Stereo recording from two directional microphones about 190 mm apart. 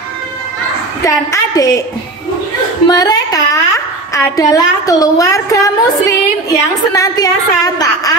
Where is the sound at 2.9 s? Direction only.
20° left (ahead or behind).